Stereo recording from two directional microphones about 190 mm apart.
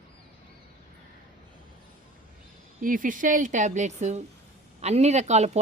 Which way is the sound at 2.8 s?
45° right (ahead or behind).